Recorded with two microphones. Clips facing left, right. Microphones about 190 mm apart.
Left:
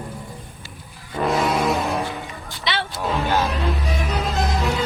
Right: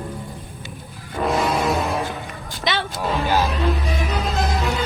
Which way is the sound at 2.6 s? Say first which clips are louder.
Right 2 dB; 45° right (ahead or behind).